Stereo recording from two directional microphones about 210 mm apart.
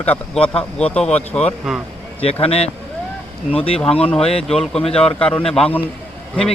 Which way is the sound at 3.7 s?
5° left (ahead or behind).